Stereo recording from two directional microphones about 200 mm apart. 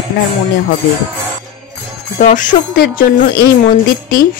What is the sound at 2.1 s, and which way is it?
A woman's voice, 40° left (ahead or behind).